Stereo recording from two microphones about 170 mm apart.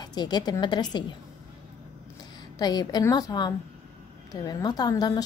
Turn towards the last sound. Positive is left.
turn(degrees=25)  # may be behind; listen again after turning